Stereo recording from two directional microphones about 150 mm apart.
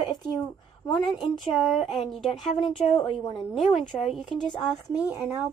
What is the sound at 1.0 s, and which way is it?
A woman's voice, centre (ahead or behind).